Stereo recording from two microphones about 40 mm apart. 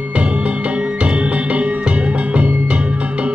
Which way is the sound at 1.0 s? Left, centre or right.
Right.